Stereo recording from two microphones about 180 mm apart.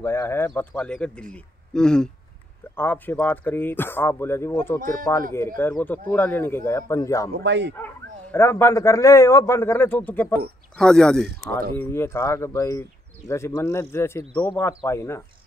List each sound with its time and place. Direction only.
0.0 s speech: 15° left (ahead or behind)
7.3 s speech: 75° right (ahead or behind)
7.7 s speech: 10° left (ahead or behind)